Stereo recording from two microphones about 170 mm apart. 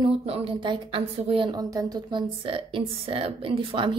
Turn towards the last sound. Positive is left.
turn(degrees=-30)  # may be behind; listen again after turning